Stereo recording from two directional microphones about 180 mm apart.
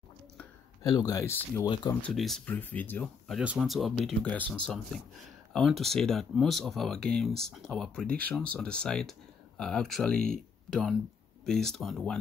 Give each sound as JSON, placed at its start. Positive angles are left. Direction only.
{"t": 0.8, "sound": "speech", "side_deg": 20}